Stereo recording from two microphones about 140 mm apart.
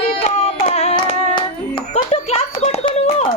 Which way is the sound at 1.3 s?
40° left (ahead or behind).